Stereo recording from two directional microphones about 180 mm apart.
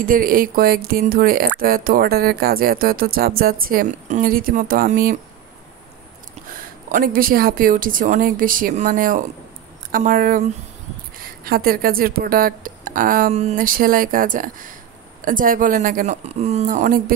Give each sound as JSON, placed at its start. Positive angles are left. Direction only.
{"t": 0.0, "sound": "speech", "side_deg": -50}
{"t": 6.9, "sound": "speech", "side_deg": -50}